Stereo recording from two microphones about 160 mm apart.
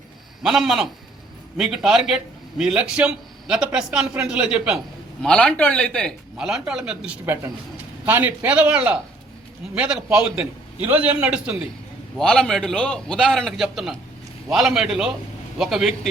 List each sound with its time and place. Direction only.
0.4 s a man's voice: centre (ahead or behind)
5.2 s a man's voice: 5° left (ahead or behind)
12.1 s a man's voice: 5° left (ahead or behind)